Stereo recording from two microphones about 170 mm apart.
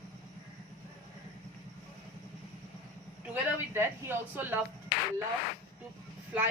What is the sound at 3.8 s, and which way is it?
Speech, 15° right (ahead or behind).